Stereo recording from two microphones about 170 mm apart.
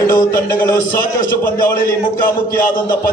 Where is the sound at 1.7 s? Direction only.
55° left (ahead or behind).